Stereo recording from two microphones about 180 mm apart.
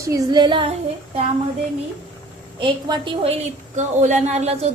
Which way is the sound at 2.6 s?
30° right (ahead or behind).